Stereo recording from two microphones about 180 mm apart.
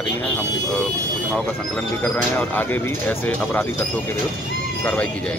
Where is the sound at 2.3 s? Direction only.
10° left (ahead or behind).